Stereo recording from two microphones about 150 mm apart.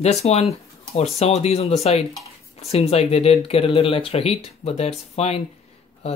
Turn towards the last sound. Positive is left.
turn(degrees=45)  # may be behind; listen again after turning